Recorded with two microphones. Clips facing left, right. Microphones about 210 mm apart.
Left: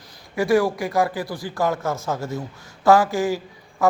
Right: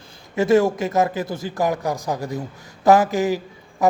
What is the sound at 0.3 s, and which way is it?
A woman's voice, 25° right (ahead or behind).